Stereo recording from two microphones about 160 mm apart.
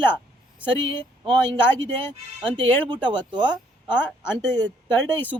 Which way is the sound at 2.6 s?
30° right (ahead or behind).